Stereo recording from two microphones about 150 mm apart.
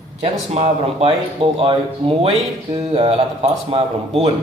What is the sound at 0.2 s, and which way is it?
A man's voice, 40° right (ahead or behind).